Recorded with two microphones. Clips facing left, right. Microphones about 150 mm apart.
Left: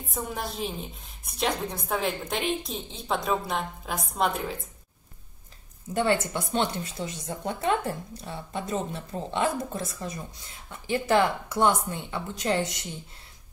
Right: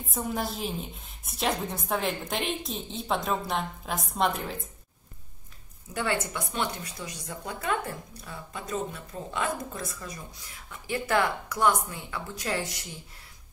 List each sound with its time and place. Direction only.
0.1 s a woman's voice: centre (ahead or behind)
6.3 s speech: 25° left (ahead or behind)